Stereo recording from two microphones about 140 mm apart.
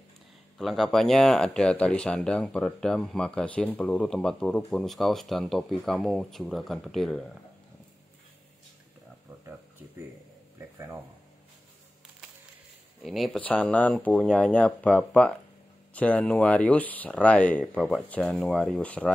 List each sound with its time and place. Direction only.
0.6 s speech: centre (ahead or behind)
13.0 s speech: centre (ahead or behind)
13.4 s speech: 10° left (ahead or behind)